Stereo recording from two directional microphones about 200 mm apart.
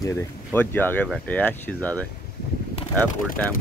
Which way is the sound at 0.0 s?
10° left (ahead or behind).